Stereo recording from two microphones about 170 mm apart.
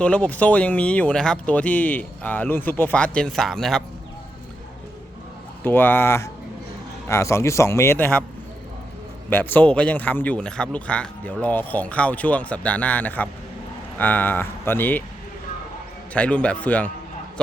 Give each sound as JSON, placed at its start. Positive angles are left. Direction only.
{"t": 0.0, "sound": "speech", "side_deg": 10}
{"t": 5.6, "sound": "speech", "side_deg": 10}
{"t": 9.3, "sound": "speech", "side_deg": 10}
{"t": 16.1, "sound": "speech", "side_deg": 5}